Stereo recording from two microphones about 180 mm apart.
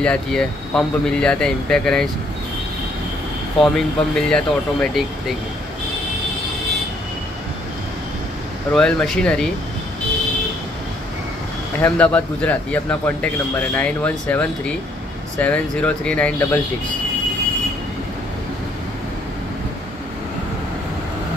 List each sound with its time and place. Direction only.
0.0 s speech: 5° left (ahead or behind)
3.6 s speech: 5° left (ahead or behind)
8.7 s speech: 5° left (ahead or behind)
11.8 s a man's voice: 10° left (ahead or behind)